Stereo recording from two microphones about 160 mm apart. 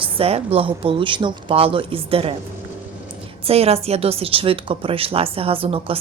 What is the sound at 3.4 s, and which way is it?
A woman's voice, 40° right (ahead or behind).